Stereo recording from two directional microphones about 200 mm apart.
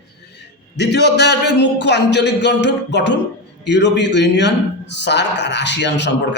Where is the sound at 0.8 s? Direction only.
60° left (ahead or behind).